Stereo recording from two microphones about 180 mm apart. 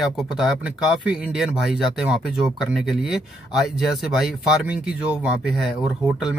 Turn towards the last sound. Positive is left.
turn(degrees=-5)  # may be behind; listen again after turning